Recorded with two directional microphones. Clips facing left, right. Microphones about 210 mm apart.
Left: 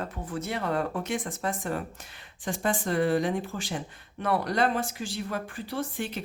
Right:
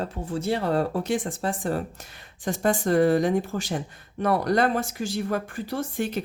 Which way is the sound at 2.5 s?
40° right (ahead or behind).